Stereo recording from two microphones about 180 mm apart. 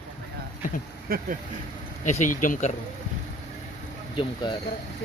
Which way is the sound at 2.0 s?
40° left (ahead or behind).